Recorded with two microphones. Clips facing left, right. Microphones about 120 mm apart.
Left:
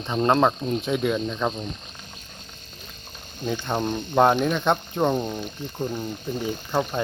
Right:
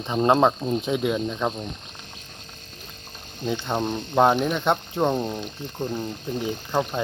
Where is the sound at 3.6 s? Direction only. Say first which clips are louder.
Even; 5° right (ahead or behind).